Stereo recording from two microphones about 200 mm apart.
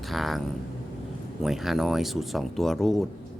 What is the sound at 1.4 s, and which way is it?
Speech, centre (ahead or behind).